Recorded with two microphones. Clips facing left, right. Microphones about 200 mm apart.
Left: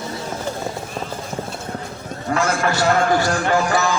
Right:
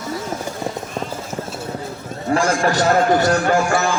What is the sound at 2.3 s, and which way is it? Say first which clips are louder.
Speech: right 3 dB; 35° right (ahead or behind).